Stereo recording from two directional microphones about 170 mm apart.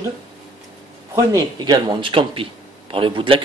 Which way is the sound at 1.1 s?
20° right (ahead or behind).